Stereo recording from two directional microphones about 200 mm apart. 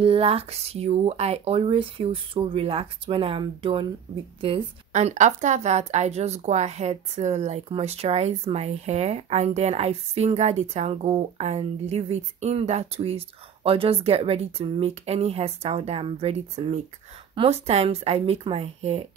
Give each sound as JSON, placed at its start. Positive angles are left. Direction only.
{"t": 0.0, "sound": "speech", "side_deg": -30}